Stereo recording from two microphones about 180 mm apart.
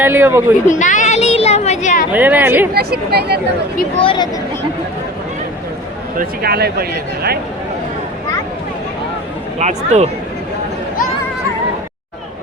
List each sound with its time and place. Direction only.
0.0 s speech: 10° right (ahead or behind)
0.6 s speech: 45° left (ahead or behind)
2.1 s speech: 10° right (ahead or behind)
2.7 s speech: 60° right (ahead or behind)
4.0 s speech: 25° left (ahead or behind)
6.1 s speech: 60° right (ahead or behind)
9.6 s speech: 40° right (ahead or behind)